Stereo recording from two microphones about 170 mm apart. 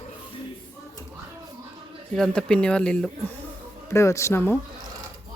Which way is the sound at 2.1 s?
5° left (ahead or behind).